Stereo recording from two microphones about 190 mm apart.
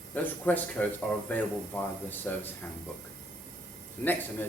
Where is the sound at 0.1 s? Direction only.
10° left (ahead or behind).